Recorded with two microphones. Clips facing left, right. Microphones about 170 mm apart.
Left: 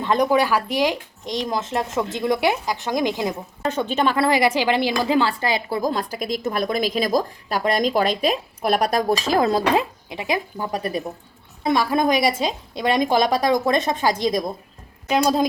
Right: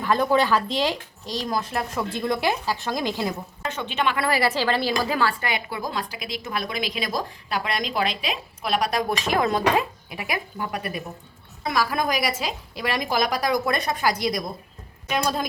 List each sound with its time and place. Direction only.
0.0 s a woman's voice: 20° left (ahead or behind)
3.6 s a woman's voice: 40° left (ahead or behind)
4.3 s a woman's voice: 15° left (ahead or behind)
15.1 s speech: 30° left (ahead or behind)